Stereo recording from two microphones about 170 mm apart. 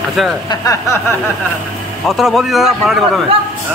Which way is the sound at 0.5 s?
20° left (ahead or behind).